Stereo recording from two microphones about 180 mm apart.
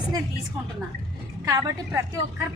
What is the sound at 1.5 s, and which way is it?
Speech, 20° right (ahead or behind).